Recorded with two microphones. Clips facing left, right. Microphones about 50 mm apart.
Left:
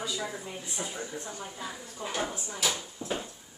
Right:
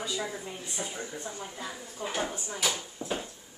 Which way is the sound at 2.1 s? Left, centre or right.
Centre.